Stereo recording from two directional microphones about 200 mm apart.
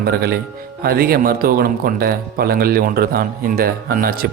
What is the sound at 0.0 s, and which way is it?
Speech, 50° right (ahead or behind).